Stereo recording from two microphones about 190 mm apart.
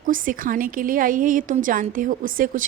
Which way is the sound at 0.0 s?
45° right (ahead or behind).